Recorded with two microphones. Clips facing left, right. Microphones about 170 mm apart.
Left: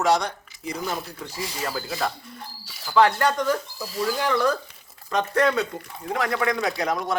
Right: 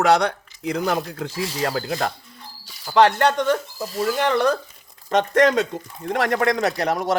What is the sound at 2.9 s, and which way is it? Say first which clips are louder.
Speech: right 3 dB; 70° right (ahead or behind).